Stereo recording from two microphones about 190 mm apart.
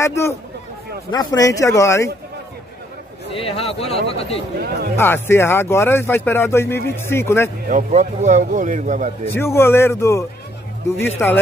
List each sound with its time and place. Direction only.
0.0 s speech: 15° left (ahead or behind)
3.3 s a man's voice: 30° left (ahead or behind)
4.6 s speech: 55° right (ahead or behind)
4.9 s speech: 10° left (ahead or behind)
7.6 s a man's voice: 40° right (ahead or behind)
9.2 s speech: 10° left (ahead or behind)